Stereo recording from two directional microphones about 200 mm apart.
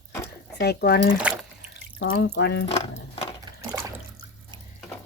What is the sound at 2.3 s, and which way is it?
Speech, 60° left (ahead or behind).